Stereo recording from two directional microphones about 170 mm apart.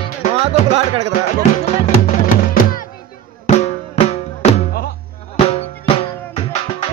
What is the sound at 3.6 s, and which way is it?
Drum, 40° left (ahead or behind).